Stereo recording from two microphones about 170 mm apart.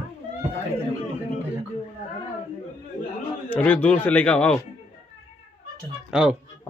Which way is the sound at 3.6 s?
10° left (ahead or behind).